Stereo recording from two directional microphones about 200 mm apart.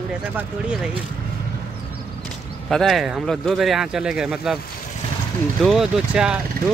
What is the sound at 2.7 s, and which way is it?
Speech, centre (ahead or behind).